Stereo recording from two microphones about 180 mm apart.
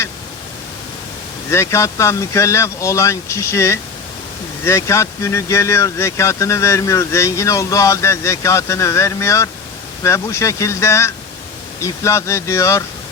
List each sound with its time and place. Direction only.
1.5 s speech: 15° left (ahead or behind)